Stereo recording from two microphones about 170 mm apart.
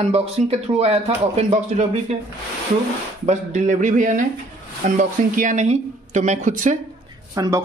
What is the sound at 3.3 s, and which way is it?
A woman's voice, 45° right (ahead or behind).